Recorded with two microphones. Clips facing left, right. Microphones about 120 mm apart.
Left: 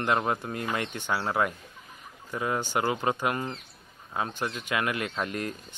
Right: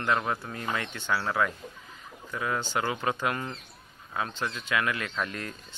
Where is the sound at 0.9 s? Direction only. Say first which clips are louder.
Even; 15° left (ahead or behind).